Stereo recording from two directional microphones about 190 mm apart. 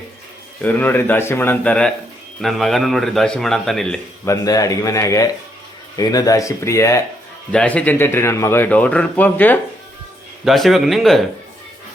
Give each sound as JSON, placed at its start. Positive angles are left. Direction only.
{"t": 0.6, "sound": "a man's voice", "side_deg": 10}
{"t": 4.3, "sound": "a man's voice", "side_deg": 20}